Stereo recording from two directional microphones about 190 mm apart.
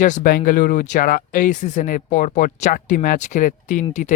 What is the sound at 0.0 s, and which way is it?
Speech, 45° left (ahead or behind).